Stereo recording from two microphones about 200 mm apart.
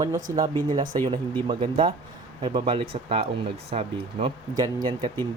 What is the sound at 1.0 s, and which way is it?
Speech, 25° right (ahead or behind).